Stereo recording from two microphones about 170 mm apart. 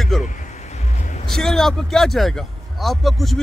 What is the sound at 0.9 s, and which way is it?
Music, 45° left (ahead or behind).